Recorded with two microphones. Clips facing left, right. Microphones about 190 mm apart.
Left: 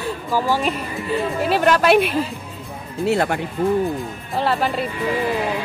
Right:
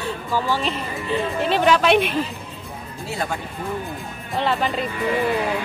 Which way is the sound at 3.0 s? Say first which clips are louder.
Left 9 dB; 65° left (ahead or behind).